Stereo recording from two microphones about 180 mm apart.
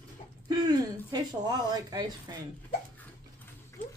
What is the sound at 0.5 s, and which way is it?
Speech, 20° right (ahead or behind).